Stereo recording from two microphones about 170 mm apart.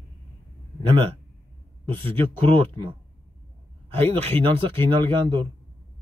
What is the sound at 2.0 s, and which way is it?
Speech, 30° right (ahead or behind).